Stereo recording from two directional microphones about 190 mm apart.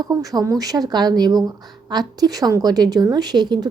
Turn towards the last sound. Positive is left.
turn(degrees=-20)  # may be behind; listen again after turning